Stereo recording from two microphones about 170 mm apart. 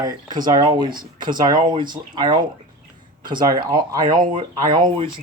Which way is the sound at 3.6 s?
25° right (ahead or behind).